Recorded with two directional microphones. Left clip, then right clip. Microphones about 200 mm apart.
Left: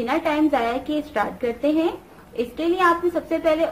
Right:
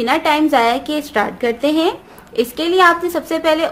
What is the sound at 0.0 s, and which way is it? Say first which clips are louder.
Speech: right 6 dB; 60° right (ahead or behind).